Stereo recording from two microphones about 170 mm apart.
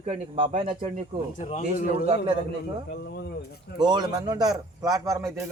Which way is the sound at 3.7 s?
25° right (ahead or behind).